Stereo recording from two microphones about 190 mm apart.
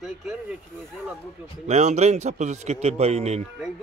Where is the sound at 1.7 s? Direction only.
35° right (ahead or behind).